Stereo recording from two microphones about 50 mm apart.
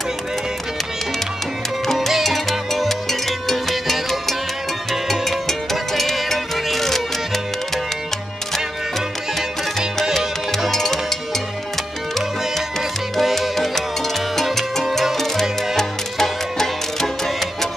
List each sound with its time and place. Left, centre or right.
2.0 s music: centre
9.3 s music: centre
13.1 s salsa music: centre
15.1 s music: centre